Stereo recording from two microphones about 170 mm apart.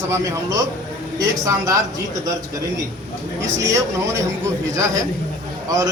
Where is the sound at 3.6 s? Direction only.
20° right (ahead or behind).